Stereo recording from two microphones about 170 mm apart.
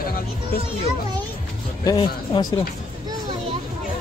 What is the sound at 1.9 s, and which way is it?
Speech, 25° left (ahead or behind).